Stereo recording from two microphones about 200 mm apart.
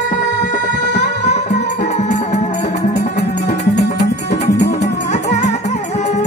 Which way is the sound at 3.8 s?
55° left (ahead or behind).